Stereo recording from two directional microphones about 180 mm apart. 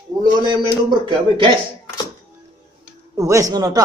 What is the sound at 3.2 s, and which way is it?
Speech, 20° right (ahead or behind).